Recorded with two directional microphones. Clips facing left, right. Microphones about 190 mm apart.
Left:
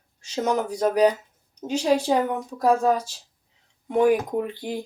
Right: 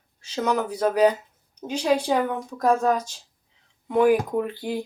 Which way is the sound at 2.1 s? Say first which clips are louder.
Left 1 dB; 15° left (ahead or behind).